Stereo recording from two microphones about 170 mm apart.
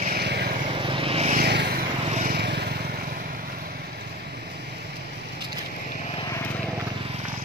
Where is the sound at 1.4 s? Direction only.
75° right (ahead or behind).